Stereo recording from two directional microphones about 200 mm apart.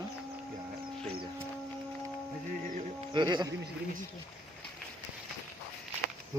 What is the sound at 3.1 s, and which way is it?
Speech, 20° right (ahead or behind).